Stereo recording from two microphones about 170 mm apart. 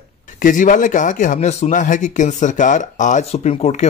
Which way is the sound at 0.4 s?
50° left (ahead or behind).